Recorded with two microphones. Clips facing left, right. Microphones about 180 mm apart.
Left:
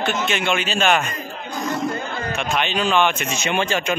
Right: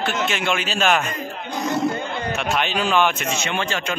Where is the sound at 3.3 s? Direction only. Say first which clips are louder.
Left 3 dB; 15° left (ahead or behind).